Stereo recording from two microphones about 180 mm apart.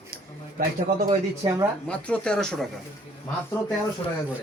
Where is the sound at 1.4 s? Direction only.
30° right (ahead or behind).